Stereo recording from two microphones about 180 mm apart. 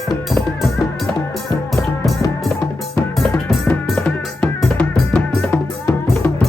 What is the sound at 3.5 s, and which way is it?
Drum, 5° left (ahead or behind).